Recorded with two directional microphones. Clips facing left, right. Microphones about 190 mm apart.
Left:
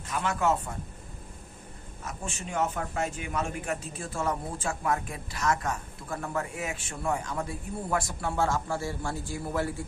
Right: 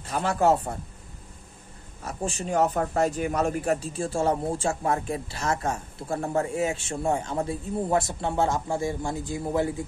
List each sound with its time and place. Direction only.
0.0 s a man's voice: 35° right (ahead or behind)
2.0 s a man's voice: 35° right (ahead or behind); by 9.8 s 20° right (ahead or behind)